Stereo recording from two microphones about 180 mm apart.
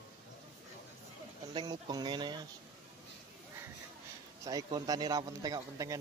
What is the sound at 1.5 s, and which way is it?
Speech, 25° right (ahead or behind).